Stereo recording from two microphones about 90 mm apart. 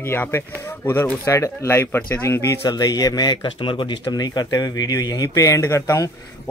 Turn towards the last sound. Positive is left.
turn(degrees=30)  # may be behind; listen again after turning